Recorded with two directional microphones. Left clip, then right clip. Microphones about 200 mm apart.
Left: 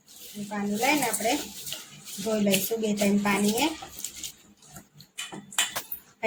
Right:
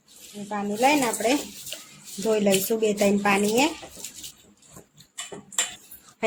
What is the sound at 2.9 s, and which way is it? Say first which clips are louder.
Speech: right 4 dB; 55° right (ahead or behind).